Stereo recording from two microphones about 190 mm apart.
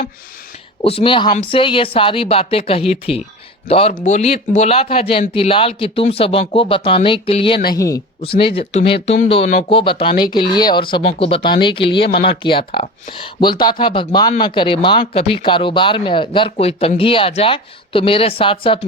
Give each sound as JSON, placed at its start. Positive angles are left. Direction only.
{"t": 0.8, "sound": "speech", "side_deg": 30}
{"t": 7.7, "sound": "speech", "side_deg": 15}
{"t": 8.2, "sound": "speech", "side_deg": 30}